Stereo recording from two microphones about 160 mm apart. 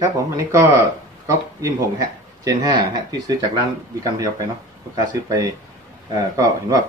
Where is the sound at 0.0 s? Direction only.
20° right (ahead or behind).